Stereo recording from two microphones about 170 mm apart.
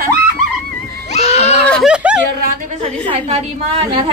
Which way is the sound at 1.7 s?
Centre (ahead or behind).